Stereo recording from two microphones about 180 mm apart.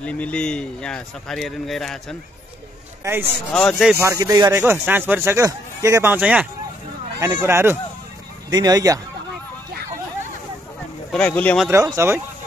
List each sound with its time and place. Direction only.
0.0 s a man's voice: 5° left (ahead or behind)
3.0 s a man's voice: 15° right (ahead or behind)
3.5 s a man's voice: centre (ahead or behind)
4.0 s a man's voice: 20° right (ahead or behind)
11.1 s a man's voice: 5° left (ahead or behind)
11.7 s speech: 15° right (ahead or behind)